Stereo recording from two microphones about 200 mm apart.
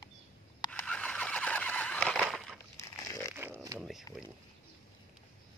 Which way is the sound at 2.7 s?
15° left (ahead or behind).